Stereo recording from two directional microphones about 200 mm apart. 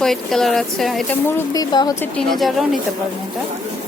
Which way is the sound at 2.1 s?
Centre (ahead or behind).